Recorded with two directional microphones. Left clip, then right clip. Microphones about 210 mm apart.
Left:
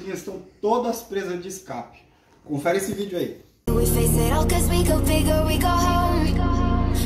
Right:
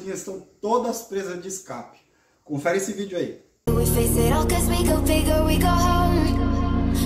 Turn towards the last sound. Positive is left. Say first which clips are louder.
# left 1 dB
turn(degrees=0)  # may be behind; listen again after turning